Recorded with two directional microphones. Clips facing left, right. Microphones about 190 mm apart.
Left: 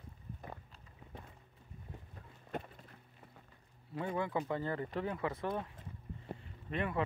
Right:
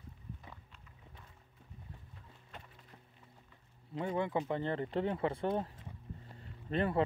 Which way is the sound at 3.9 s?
20° right (ahead or behind).